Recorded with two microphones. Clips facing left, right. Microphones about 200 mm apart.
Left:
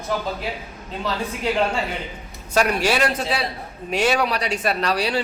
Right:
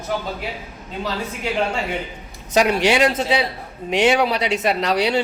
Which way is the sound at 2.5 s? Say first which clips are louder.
Right 3 dB; 20° right (ahead or behind).